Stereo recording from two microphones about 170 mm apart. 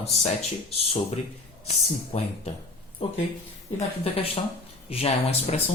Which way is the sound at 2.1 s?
40° left (ahead or behind).